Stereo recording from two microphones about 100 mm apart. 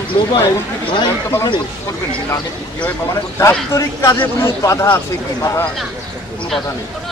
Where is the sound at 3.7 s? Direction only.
30° left (ahead or behind).